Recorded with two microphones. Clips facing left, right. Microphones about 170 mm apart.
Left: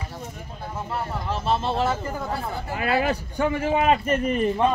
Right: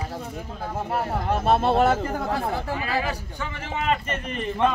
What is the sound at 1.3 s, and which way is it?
Speech, 55° right (ahead or behind).